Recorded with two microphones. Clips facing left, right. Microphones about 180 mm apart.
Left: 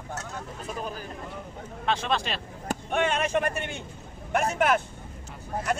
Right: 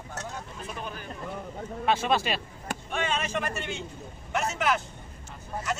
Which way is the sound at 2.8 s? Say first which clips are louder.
Left 5 dB; 60° left (ahead or behind).